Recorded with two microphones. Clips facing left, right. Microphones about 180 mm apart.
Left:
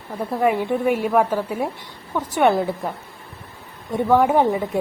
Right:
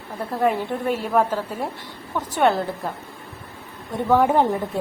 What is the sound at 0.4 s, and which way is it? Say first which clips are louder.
Speech: left 3 dB; 15° left (ahead or behind).